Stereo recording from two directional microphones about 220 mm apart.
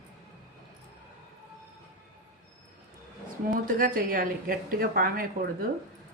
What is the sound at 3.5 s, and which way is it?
A woman's voice, 40° right (ahead or behind).